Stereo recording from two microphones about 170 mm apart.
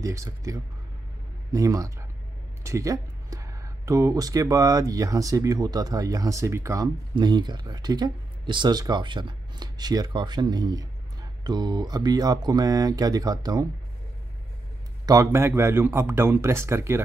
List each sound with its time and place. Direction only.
0.0 s speech: 20° right (ahead or behind)
15.0 s speech: 15° right (ahead or behind)